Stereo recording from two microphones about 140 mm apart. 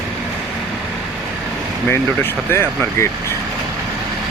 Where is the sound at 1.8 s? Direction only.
15° left (ahead or behind).